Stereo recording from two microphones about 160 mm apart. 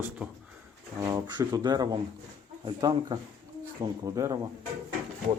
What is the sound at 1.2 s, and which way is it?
Speech, 25° right (ahead or behind).